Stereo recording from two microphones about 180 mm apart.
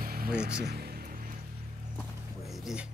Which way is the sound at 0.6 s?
60° right (ahead or behind).